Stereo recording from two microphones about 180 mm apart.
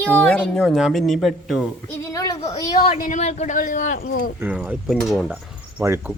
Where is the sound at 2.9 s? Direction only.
45° left (ahead or behind).